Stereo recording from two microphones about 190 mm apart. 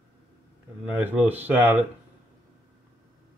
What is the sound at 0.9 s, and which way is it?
Speech, 10° right (ahead or behind).